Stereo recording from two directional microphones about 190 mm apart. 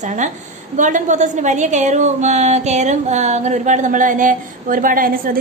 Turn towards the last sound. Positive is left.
turn(degrees=-45)  # may be behind; listen again after turning